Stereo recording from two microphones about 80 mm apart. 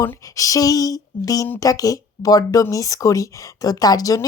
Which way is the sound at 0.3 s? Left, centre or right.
Left.